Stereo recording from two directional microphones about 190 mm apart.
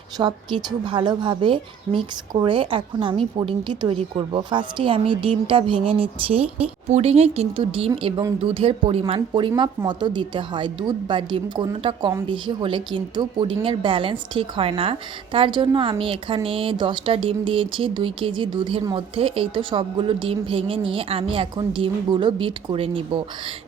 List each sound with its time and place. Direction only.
0.2 s a woman's voice: 25° right (ahead or behind)